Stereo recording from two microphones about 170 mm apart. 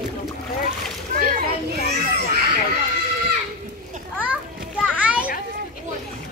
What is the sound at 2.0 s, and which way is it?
Children playing, 60° right (ahead or behind).